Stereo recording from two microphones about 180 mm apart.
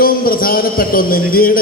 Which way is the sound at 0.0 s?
55° left (ahead or behind).